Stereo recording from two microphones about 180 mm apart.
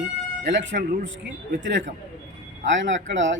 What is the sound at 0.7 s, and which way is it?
Speech, 55° right (ahead or behind).